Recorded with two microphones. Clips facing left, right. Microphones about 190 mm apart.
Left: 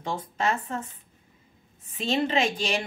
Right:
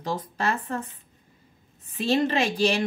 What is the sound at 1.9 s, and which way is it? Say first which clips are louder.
Speech: right 2 dB; 35° right (ahead or behind).